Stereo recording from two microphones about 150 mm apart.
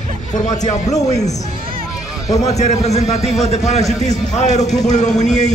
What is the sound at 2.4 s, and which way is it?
A man's voice, 45° left (ahead or behind).